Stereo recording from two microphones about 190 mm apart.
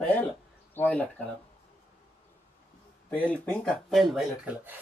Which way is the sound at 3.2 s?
5° left (ahead or behind).